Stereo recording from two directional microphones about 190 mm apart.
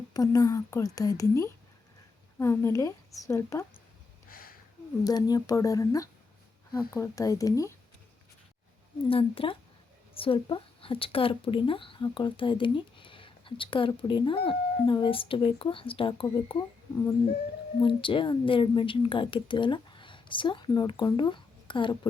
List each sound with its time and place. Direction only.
0.1 s a woman's voice: 20° left (ahead or behind)
4.3 s a sound: 50° left (ahead or behind)
5.0 s a woman's voice: 20° left (ahead or behind)
9.0 s a woman's voice: 30° left (ahead or behind)
17.8 s a woman's voice: 25° left (ahead or behind)